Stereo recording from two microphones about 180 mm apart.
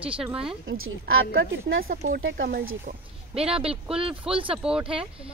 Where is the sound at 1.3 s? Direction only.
55° right (ahead or behind).